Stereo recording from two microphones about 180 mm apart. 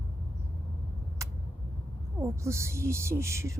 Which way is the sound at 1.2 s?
15° right (ahead or behind).